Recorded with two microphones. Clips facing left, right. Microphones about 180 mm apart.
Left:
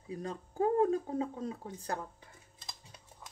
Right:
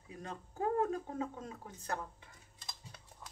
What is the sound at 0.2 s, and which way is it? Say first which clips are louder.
Speech: left 5 dB; 30° left (ahead or behind).